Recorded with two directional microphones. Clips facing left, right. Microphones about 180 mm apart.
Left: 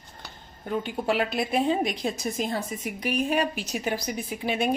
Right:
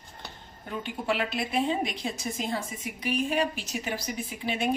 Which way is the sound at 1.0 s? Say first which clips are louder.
Left 2 dB; 45° left (ahead or behind).